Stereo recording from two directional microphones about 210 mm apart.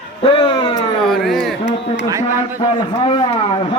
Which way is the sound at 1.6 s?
30° left (ahead or behind).